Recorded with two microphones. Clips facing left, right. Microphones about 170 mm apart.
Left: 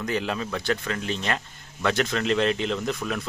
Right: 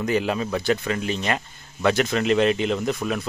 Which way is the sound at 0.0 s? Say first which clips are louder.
Right 5 dB; 10° right (ahead or behind).